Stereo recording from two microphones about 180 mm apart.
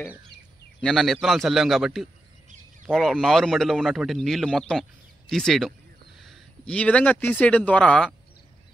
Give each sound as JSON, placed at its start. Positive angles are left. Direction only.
{"t": 0.7, "sound": "a man's voice", "side_deg": 0}